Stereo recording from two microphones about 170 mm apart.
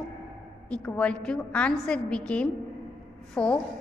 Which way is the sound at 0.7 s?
5° left (ahead or behind).